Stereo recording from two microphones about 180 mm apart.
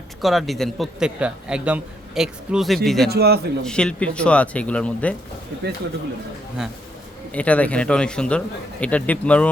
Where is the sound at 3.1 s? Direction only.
65° right (ahead or behind).